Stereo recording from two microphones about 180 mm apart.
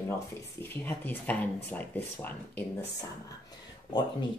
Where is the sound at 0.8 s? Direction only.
10° left (ahead or behind).